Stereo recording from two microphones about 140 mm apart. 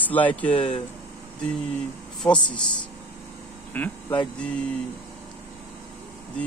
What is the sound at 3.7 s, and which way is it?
Speech, 10° left (ahead or behind).